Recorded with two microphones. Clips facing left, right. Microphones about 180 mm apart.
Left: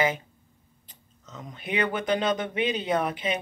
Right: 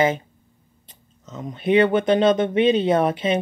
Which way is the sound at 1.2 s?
25° right (ahead or behind).